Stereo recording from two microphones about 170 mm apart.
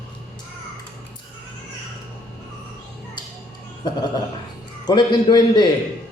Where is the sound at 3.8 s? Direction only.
25° left (ahead or behind).